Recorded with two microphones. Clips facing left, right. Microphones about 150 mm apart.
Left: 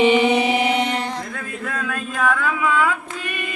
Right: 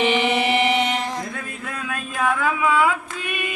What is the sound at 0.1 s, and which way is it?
Mantra, centre (ahead or behind).